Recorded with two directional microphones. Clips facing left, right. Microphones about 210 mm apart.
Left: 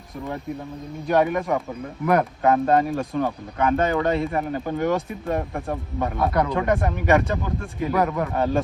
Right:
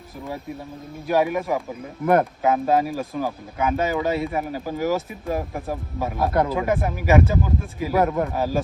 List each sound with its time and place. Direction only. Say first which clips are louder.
1.0 s speech: left 1 dB; 5° right (ahead or behind)